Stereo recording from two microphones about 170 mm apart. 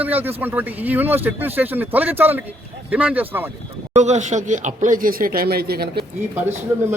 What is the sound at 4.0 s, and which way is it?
Speech, 45° right (ahead or behind).